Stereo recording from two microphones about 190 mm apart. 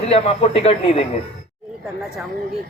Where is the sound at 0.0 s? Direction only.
35° left (ahead or behind).